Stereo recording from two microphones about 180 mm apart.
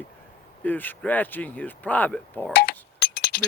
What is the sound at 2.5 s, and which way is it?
Chink, 60° left (ahead or behind).